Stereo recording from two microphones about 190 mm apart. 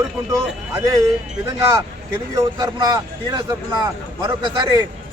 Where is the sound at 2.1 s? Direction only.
15° right (ahead or behind).